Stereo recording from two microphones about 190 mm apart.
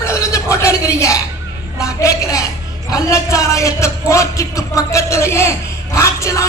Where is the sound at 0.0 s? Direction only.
15° left (ahead or behind).